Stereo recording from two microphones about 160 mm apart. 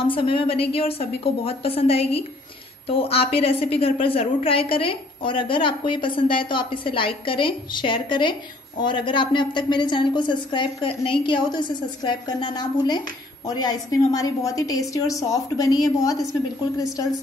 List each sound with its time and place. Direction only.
0.0 s a woman's voice: 35° left (ahead or behind)